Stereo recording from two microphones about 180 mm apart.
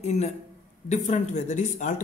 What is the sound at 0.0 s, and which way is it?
Speech, 40° left (ahead or behind).